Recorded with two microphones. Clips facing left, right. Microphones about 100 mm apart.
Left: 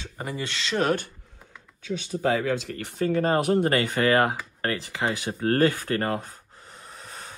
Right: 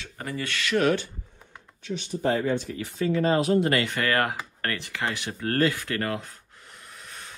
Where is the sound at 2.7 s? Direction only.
55° left (ahead or behind).